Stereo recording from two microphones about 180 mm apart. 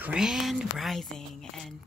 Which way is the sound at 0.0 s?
5° right (ahead or behind).